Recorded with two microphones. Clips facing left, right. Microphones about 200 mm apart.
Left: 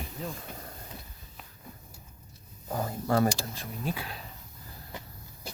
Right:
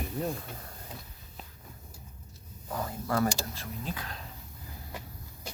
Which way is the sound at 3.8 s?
10° left (ahead or behind).